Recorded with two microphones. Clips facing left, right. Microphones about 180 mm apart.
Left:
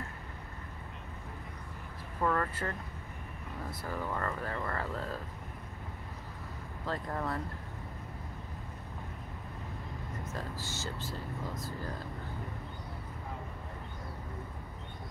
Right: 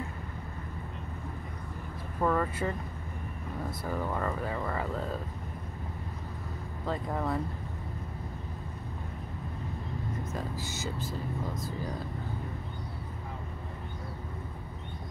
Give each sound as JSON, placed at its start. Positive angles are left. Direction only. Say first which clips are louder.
{"t": 2.2, "sound": "speech", "louder": "right 3 dB", "side_deg": -10}
{"t": 3.8, "sound": "speech", "louder": "right 3 dB", "side_deg": -10}
{"t": 6.9, "sound": "speech", "louder": "right 4 dB", "side_deg": -10}
{"t": 10.3, "sound": "speech", "louder": "right 4 dB", "side_deg": -15}